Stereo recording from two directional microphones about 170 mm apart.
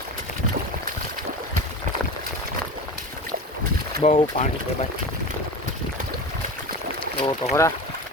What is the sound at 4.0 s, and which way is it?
Speech, 35° left (ahead or behind).